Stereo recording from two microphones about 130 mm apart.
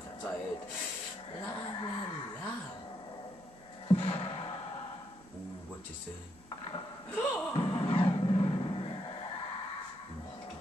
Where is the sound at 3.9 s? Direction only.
45° left (ahead or behind).